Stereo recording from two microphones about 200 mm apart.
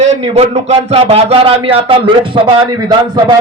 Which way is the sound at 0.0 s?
30° right (ahead or behind).